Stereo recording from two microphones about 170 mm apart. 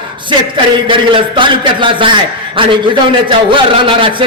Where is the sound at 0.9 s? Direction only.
30° right (ahead or behind).